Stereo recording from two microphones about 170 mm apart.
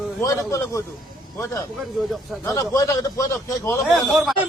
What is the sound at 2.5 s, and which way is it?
Speech, 20° left (ahead or behind).